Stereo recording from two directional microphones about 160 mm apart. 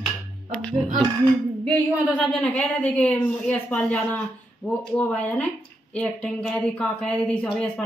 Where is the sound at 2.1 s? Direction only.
10° left (ahead or behind).